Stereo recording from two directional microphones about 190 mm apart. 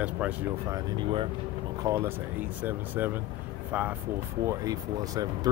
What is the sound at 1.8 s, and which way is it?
Speech, 15° right (ahead or behind).